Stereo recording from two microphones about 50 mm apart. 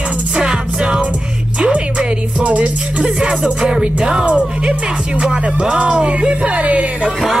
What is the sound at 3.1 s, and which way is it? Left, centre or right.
Music, centre.